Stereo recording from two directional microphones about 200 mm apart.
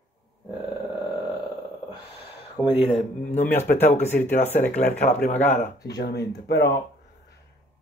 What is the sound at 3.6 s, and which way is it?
Speech, 10° left (ahead or behind).